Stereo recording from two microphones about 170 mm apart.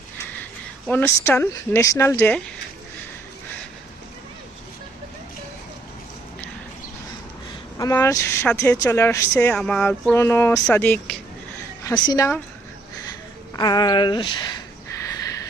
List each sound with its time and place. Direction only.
0.9 s speech: 15° left (ahead or behind)
7.8 s speech: 15° left (ahead or behind)
12.0 s a woman's voice: 20° left (ahead or behind)
13.5 s a woman's voice: 25° left (ahead or behind)